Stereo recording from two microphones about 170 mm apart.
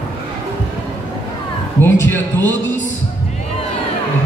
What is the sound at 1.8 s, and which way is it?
Speech, 10° left (ahead or behind).